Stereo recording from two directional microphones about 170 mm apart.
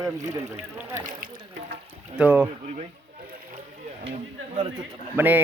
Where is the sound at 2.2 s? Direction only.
10° right (ahead or behind).